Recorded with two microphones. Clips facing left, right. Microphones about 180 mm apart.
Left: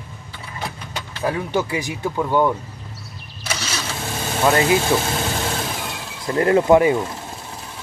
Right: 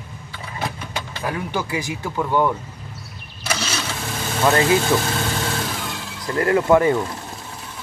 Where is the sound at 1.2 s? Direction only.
20° left (ahead or behind).